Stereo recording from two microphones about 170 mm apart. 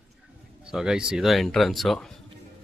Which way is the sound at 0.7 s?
5° right (ahead or behind).